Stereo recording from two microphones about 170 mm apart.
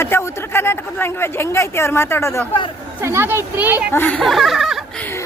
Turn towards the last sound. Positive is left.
turn(degrees=0)  # may be behind; listen again after turning